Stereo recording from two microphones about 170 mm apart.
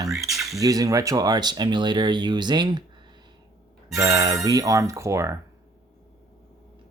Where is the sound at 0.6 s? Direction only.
20° right (ahead or behind).